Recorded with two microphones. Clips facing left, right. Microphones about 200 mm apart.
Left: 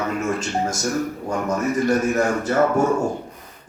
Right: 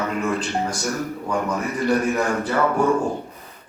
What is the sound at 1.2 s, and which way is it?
A man's voice, 45° left (ahead or behind).